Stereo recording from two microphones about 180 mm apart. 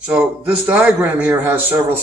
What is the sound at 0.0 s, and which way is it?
A man's voice, 10° right (ahead or behind).